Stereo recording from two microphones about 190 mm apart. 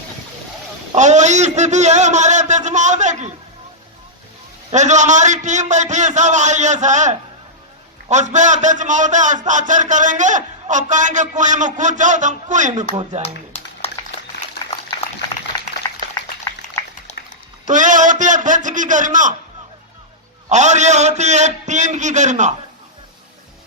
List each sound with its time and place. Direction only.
0.9 s a man's voice: 40° right (ahead or behind)
4.7 s a man's voice: 40° right (ahead or behind)
13.2 s a sound: 30° left (ahead or behind)
15.5 s a sound: 15° left (ahead or behind)
17.7 s a man's voice: 40° right (ahead or behind)
20.5 s a man's voice: 40° right (ahead or behind)